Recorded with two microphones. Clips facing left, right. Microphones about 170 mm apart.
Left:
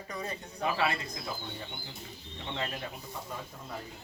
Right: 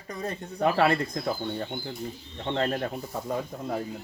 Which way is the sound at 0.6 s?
60° right (ahead or behind).